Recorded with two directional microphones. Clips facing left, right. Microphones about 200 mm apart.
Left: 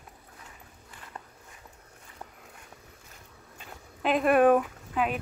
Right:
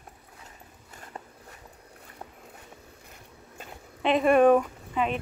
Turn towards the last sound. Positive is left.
turn(degrees=5)  # may be behind; listen again after turning